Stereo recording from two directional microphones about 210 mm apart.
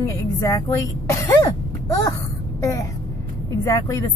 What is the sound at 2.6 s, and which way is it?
A woman's voice, 15° left (ahead or behind).